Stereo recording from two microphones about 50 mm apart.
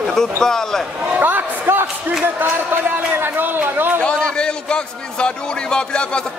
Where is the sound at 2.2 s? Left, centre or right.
Right.